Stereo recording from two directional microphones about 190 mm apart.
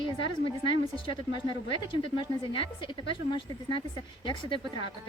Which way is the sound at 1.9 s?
25° left (ahead or behind).